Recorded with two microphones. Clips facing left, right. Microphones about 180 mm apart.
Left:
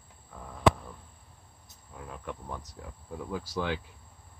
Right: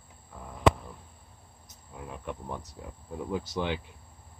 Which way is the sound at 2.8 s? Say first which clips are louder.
Right 2 dB; 15° right (ahead or behind).